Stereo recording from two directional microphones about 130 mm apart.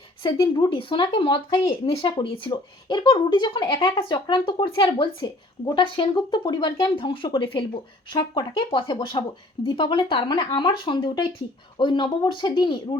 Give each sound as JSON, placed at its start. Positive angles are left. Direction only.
{"t": 0.2, "sound": "speech", "side_deg": 35}